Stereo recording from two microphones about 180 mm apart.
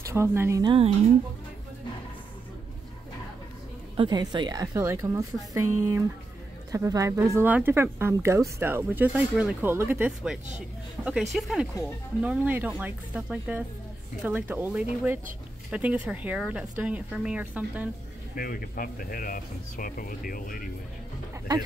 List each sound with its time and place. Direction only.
0.0 s speech: 15° right (ahead or behind)
0.7 s speech: 30° right (ahead or behind)
3.9 s a woman's voice: 25° right (ahead or behind); by 17.8 s 10° right (ahead or behind)
18.3 s speech: 55° left (ahead or behind)